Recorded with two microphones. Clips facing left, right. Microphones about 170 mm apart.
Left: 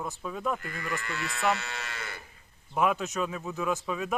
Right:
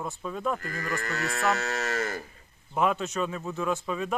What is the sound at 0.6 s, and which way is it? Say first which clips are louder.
Moo: right 3 dB; 40° right (ahead or behind).